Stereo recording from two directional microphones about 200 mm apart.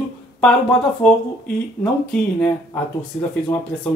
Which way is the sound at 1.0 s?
5° left (ahead or behind).